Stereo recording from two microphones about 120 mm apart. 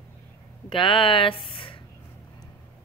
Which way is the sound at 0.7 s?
45° left (ahead or behind).